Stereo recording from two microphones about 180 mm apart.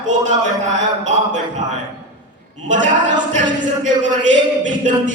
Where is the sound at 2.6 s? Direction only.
45° right (ahead or behind).